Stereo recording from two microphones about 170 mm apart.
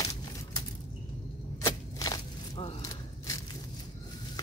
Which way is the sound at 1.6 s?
25° left (ahead or behind).